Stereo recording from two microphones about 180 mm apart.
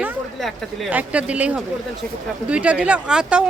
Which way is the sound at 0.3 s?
Centre (ahead or behind).